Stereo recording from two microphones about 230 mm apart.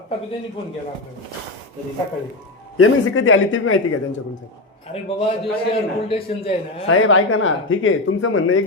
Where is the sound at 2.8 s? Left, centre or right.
Left.